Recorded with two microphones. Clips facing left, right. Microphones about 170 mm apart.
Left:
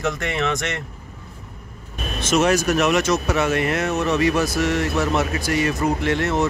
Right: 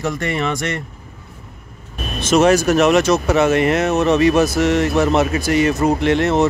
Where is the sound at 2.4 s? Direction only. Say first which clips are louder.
Right 6 dB; 30° right (ahead or behind).